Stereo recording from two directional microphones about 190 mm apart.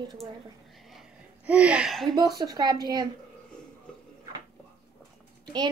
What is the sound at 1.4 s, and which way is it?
Speech, 5° right (ahead or behind).